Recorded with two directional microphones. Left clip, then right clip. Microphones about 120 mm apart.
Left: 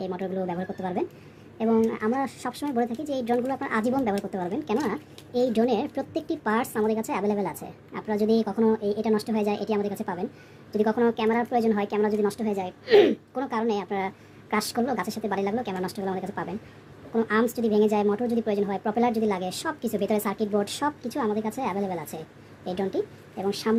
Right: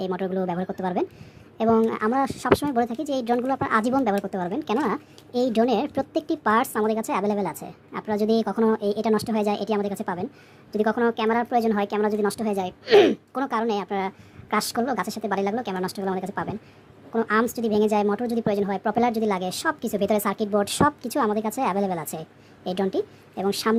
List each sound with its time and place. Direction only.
0.0 s a woman's voice: 40° right (ahead or behind)